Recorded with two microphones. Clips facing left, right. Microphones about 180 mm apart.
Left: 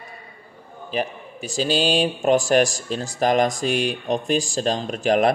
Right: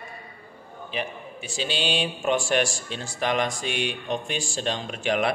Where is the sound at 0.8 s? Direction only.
40° left (ahead or behind).